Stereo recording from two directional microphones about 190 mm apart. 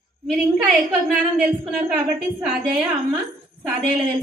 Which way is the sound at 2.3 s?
5° right (ahead or behind).